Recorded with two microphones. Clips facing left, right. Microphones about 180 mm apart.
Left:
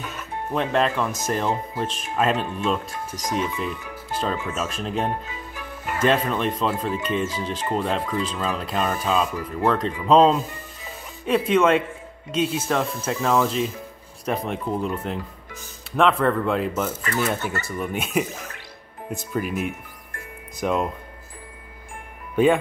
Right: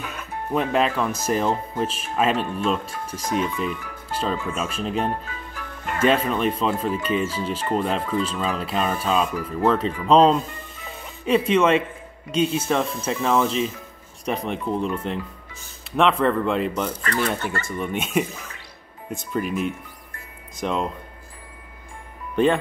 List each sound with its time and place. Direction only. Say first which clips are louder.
0.0 s music: even; 5° right (ahead or behind)
1.3 s speech: right 3 dB; centre (ahead or behind)
19.3 s speech: right 2 dB; 5° left (ahead or behind)
22.3 s speech: left 1 dB; 10° left (ahead or behind)